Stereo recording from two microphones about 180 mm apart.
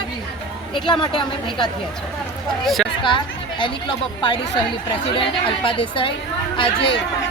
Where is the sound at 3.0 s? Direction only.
25° left (ahead or behind).